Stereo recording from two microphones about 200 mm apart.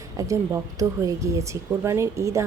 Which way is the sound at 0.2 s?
15° right (ahead or behind).